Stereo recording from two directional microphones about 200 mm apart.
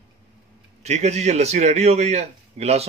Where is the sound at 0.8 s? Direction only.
35° right (ahead or behind).